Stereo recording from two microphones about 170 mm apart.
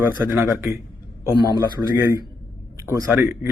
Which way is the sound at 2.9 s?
20° right (ahead or behind).